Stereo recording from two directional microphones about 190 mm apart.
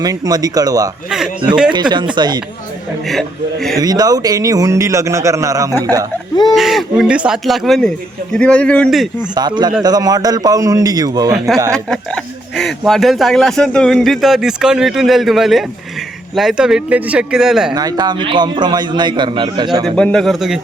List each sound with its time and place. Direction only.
0.0 s a man's voice: 20° right (ahead or behind)
3.1 s speech: centre (ahead or behind)
3.8 s a man's voice: 20° right (ahead or behind)
6.5 s speech: centre (ahead or behind)
9.3 s a man's voice: 20° right (ahead or behind)
11.3 s speech: centre (ahead or behind)
17.7 s a man's voice: 20° right (ahead or behind)
20.0 s speech: 5° left (ahead or behind)